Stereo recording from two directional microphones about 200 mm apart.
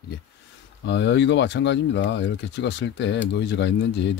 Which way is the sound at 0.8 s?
60° left (ahead or behind).